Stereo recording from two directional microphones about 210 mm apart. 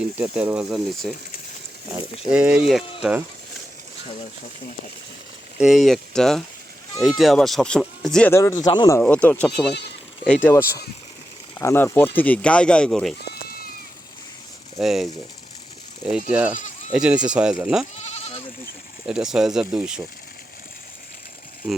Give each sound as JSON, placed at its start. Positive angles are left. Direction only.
{"t": 0.0, "sound": "speech", "side_deg": -5}
{"t": 2.3, "sound": "speech", "side_deg": -5}
{"t": 5.5, "sound": "speech", "side_deg": 0}
{"t": 9.0, "sound": "speech", "side_deg": 5}
{"t": 14.8, "sound": "speech", "side_deg": 0}
{"t": 16.3, "sound": "speech", "side_deg": -5}
{"t": 17.9, "sound": "goat", "side_deg": 30}
{"t": 19.0, "sound": "speech", "side_deg": -5}